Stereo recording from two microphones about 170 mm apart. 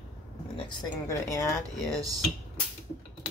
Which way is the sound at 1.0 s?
20° left (ahead or behind).